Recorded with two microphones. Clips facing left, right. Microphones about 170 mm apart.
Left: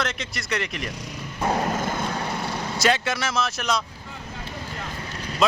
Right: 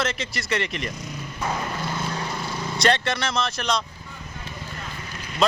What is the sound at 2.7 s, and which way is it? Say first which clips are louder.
A man's voice: right 1 dB; 5° left (ahead or behind).